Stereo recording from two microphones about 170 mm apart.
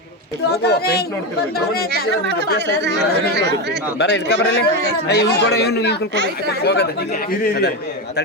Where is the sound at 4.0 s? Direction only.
90° left.